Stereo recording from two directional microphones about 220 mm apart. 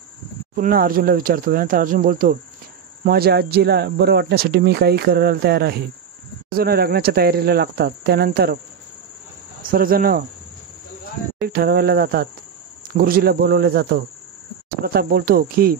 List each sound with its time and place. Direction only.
0.6 s speech: 40° right (ahead or behind)
9.6 s speech: 40° right (ahead or behind)
11.4 s speech: 45° right (ahead or behind)